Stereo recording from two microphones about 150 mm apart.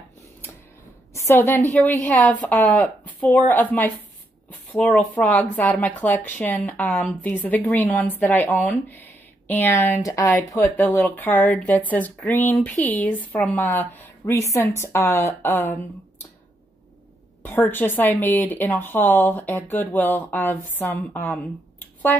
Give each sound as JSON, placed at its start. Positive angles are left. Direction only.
{"t": 1.1, "sound": "a woman's voice", "side_deg": 15}
{"t": 17.4, "sound": "a woman's voice", "side_deg": 15}